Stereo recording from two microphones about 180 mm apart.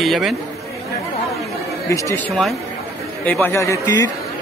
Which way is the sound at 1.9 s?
15° left (ahead or behind).